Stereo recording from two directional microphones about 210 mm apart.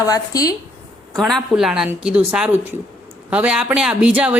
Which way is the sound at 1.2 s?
Centre (ahead or behind).